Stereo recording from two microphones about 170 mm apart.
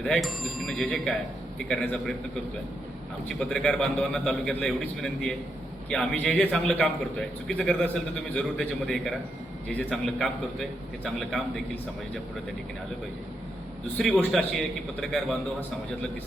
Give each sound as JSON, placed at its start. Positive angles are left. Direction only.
{"t": 0.0, "sound": "a man's voice", "side_deg": 0}
{"t": 3.5, "sound": "a man's voice", "side_deg": 5}
{"t": 14.0, "sound": "a man's voice", "side_deg": 5}